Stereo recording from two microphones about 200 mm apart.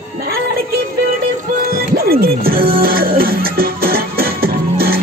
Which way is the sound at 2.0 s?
50° right (ahead or behind).